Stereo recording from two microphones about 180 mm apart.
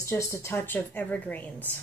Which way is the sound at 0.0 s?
15° left (ahead or behind).